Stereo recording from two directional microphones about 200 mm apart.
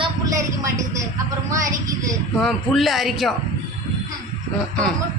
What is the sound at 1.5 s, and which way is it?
Speech, 15° right (ahead or behind).